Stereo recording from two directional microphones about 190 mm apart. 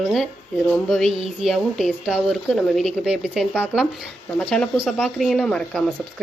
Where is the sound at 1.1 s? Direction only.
30° right (ahead or behind).